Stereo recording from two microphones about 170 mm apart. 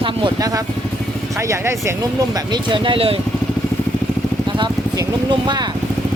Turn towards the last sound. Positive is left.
turn(degrees=-25)  # may be behind; listen again after turning